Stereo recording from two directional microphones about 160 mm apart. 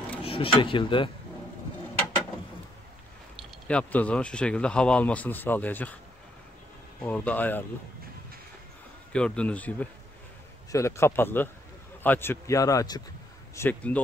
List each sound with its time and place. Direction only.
0.2 s speech: 35° left (ahead or behind)
3.6 s speech: 10° left (ahead or behind)
7.0 s speech: 10° left (ahead or behind)
9.1 s speech: 5° left (ahead or behind)
13.6 s speech: 10° left (ahead or behind)